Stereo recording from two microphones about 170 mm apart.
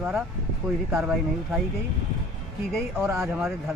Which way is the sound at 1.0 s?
Centre (ahead or behind).